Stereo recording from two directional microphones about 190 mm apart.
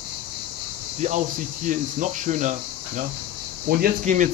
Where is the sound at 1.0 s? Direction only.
40° right (ahead or behind).